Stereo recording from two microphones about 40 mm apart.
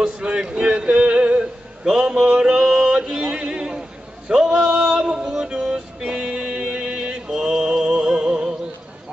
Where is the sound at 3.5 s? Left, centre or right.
Centre.